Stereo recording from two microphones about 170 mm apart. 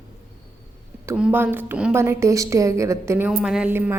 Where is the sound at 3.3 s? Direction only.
5° right (ahead or behind).